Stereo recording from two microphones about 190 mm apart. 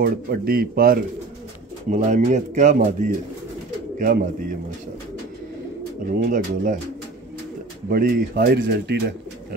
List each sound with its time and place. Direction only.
0.0 s speech: 50° right (ahead or behind)
1.9 s speech: 40° right (ahead or behind)
6.0 s speech: 45° right (ahead or behind)
7.9 s speech: 55° right (ahead or behind)